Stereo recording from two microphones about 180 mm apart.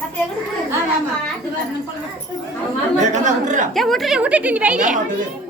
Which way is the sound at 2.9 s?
45° right (ahead or behind).